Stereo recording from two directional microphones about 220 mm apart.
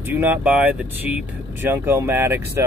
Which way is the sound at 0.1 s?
10° right (ahead or behind).